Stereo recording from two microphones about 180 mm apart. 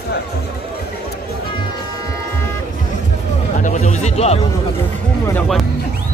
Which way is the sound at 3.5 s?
45° left (ahead or behind).